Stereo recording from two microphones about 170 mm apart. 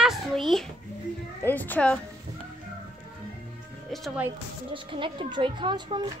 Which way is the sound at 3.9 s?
Centre (ahead or behind).